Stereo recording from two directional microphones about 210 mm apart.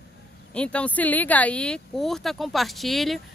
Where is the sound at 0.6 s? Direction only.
5° left (ahead or behind).